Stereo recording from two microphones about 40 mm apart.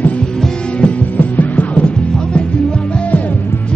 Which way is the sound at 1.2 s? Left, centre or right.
Left.